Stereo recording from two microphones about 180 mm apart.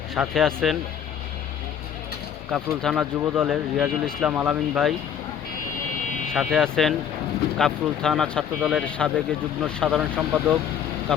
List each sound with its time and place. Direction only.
0.1 s speech: centre (ahead or behind)
2.5 s speech: centre (ahead or behind)
6.3 s speech: centre (ahead or behind)